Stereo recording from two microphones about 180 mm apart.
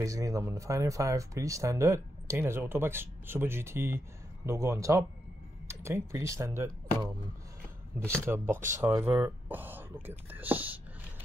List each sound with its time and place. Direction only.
0.0 s speech: 20° right (ahead or behind)
8.3 s speech: 15° right (ahead or behind)